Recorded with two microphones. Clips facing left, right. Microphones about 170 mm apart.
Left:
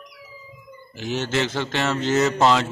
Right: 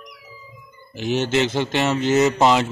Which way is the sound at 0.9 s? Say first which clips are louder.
Right 4 dB; 20° right (ahead or behind).